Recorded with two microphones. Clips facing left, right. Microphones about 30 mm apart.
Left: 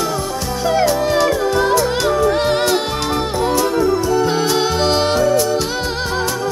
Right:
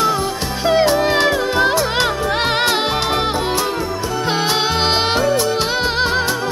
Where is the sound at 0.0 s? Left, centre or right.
Right.